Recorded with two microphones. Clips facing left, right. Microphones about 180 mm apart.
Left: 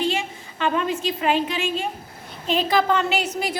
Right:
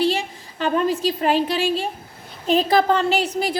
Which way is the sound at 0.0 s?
35° right (ahead or behind).